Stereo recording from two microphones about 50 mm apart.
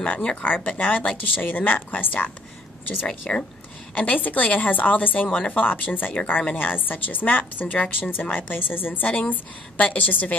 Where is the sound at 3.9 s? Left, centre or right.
Left.